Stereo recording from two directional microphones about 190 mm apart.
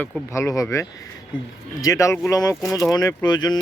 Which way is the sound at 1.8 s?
15° left (ahead or behind).